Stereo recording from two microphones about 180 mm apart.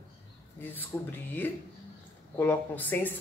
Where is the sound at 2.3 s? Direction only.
10° left (ahead or behind).